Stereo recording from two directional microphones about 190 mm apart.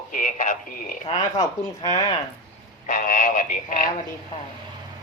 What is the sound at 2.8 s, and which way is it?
Speech, 45° left (ahead or behind).